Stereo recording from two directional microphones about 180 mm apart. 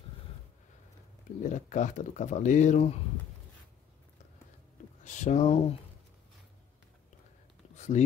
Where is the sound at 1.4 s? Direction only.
45° left (ahead or behind).